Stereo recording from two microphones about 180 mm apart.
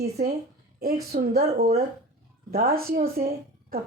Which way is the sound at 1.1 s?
60° right (ahead or behind).